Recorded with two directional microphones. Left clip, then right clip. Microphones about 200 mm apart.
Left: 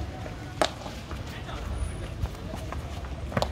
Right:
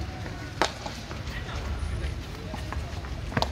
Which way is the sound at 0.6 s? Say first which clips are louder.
Even; 60° left (ahead or behind).